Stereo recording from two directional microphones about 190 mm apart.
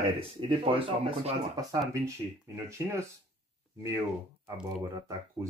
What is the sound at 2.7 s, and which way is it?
Speech, 15° right (ahead or behind).